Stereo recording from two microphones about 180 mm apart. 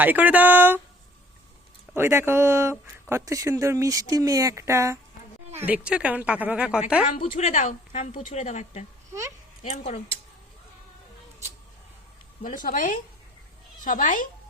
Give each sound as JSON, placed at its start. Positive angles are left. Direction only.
{"t": 0.0, "sound": "speech", "side_deg": -10}
{"t": 2.0, "sound": "speech", "side_deg": -15}
{"t": 7.2, "sound": "a woman's voice", "side_deg": 35}
{"t": 12.4, "sound": "speech", "side_deg": 50}